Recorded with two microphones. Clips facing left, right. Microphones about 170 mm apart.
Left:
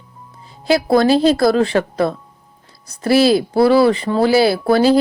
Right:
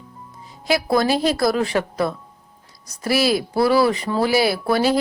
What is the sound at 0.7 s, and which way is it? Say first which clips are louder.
A woman's voice: left 6 dB; 30° left (ahead or behind).